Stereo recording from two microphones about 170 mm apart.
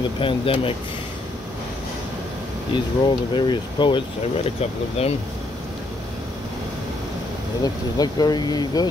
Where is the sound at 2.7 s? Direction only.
25° left (ahead or behind).